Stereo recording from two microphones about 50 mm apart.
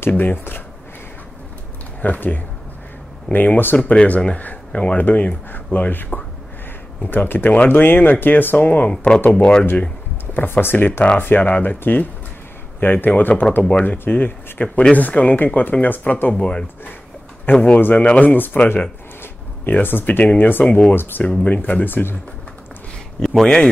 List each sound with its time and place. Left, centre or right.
0.2 s speech: left
2.0 s speech: left
3.7 s speech: left
8.5 s speech: left
8.9 s speech: centre
10.3 s speech: left
11.4 s speech: left
19.6 s speech: left
20.6 s speech: centre
20.9 s speech: left
21.2 s speech: left
23.4 s speech: centre